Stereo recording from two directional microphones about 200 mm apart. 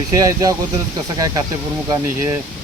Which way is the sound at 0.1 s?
15° right (ahead or behind).